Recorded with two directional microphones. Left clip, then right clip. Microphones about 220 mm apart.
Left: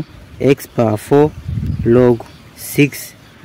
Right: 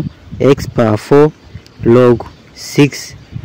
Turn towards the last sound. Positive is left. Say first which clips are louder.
# right 3 dB
turn(degrees=-15)  # may be behind; listen again after turning